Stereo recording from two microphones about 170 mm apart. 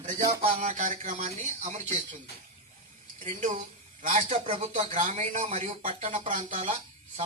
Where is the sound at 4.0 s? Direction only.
50° right (ahead or behind).